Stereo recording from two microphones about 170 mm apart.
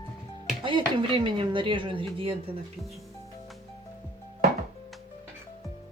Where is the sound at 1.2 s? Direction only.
30° right (ahead or behind).